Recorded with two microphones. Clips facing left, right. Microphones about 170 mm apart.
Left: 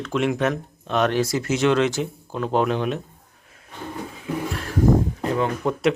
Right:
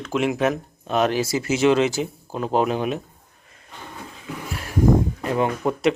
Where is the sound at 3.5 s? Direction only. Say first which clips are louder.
Left 1 dB; centre (ahead or behind).